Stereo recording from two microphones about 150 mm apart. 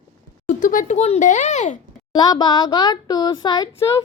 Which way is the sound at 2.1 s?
30° left (ahead or behind).